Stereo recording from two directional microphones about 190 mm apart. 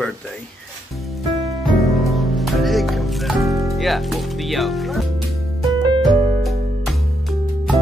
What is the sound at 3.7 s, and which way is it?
Speech, centre (ahead or behind).